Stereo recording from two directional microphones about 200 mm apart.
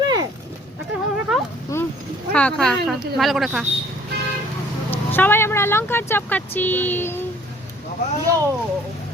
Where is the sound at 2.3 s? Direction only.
5° left (ahead or behind).